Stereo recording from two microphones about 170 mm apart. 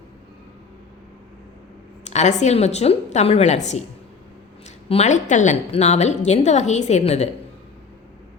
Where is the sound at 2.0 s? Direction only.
40° left (ahead or behind).